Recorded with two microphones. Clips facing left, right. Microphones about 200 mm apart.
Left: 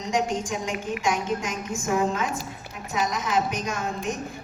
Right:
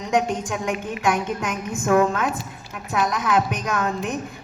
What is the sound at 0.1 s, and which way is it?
A woman's voice, 60° right (ahead or behind).